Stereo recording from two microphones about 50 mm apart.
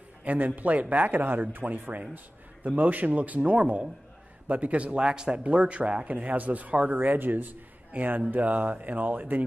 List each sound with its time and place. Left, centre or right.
0.2 s a man's voice: right